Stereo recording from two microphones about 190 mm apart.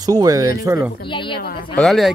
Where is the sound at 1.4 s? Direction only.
55° left (ahead or behind).